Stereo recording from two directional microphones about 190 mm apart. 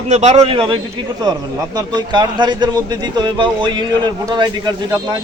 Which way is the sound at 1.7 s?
20° right (ahead or behind).